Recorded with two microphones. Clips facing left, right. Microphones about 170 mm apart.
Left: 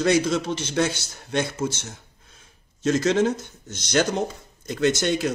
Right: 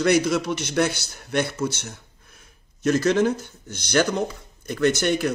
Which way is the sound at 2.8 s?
25° left (ahead or behind).